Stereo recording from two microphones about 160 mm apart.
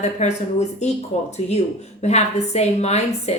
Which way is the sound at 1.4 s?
45° left (ahead or behind).